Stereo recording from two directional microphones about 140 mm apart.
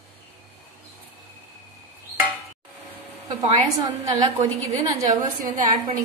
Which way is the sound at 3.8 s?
25° right (ahead or behind).